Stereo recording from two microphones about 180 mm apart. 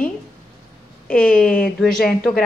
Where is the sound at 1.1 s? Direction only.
5° left (ahead or behind).